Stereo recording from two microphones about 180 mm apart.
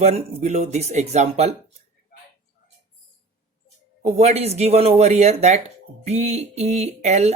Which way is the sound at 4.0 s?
35° right (ahead or behind).